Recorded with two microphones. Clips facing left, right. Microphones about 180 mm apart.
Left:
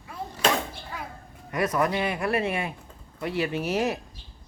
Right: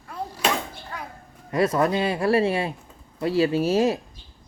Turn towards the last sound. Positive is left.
turn(degrees=-30)  # may be behind; listen again after turning